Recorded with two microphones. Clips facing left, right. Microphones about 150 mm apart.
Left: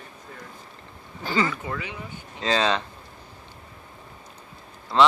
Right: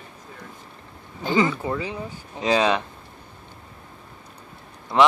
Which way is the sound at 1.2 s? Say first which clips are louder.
Right 4 dB; 20° right (ahead or behind).